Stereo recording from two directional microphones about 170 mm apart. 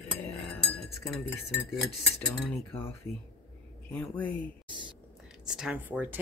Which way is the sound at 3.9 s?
10° left (ahead or behind).